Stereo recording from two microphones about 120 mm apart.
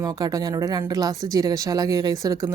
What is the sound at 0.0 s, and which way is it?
A woman's voice, 30° right (ahead or behind).